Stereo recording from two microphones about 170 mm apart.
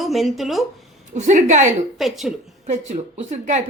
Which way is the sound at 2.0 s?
Centre (ahead or behind).